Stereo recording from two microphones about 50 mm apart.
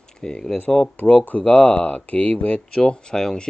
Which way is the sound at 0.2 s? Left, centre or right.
Centre.